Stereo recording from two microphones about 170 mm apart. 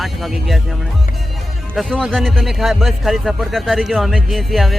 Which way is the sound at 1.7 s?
5° left (ahead or behind).